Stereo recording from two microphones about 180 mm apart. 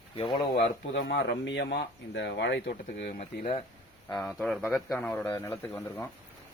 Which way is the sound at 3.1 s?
35° left (ahead or behind).